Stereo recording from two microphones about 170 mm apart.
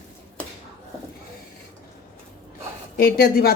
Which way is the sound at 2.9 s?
60° left (ahead or behind).